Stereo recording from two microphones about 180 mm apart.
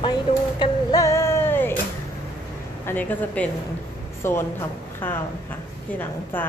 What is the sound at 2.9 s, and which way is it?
A woman's voice, 10° left (ahead or behind).